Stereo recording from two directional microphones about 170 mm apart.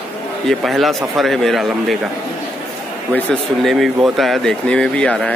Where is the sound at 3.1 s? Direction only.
5° left (ahead or behind).